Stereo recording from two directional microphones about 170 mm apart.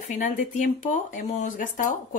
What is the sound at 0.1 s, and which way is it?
Speech, 45° left (ahead or behind).